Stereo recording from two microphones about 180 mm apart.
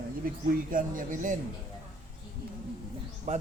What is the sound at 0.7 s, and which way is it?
Speech, 50° right (ahead or behind).